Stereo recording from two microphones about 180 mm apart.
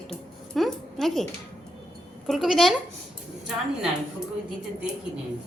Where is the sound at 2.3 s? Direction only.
Centre (ahead or behind).